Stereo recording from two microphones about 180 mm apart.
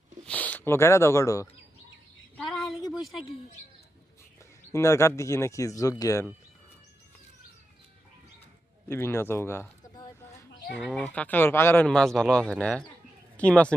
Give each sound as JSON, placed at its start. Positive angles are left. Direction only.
{"t": 0.3, "sound": "speech", "side_deg": 10}
{"t": 2.3, "sound": "a sound", "side_deg": 0}
{"t": 4.7, "sound": "speech", "side_deg": 15}
{"t": 8.9, "sound": "speech", "side_deg": 15}
{"t": 10.8, "sound": "speech", "side_deg": -5}